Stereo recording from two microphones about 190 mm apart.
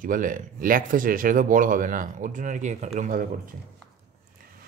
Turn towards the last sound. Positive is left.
turn(degrees=-45)  # may be behind; listen again after turning